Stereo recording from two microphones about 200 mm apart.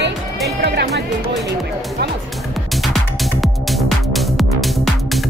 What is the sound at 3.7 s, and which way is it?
Music, centre (ahead or behind).